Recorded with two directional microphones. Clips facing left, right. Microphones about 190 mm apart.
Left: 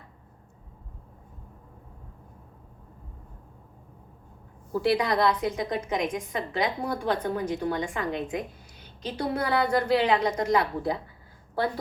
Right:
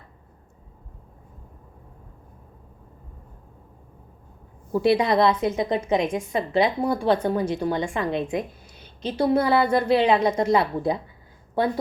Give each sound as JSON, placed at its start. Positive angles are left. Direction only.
{"t": 4.7, "sound": "a woman's voice", "side_deg": -25}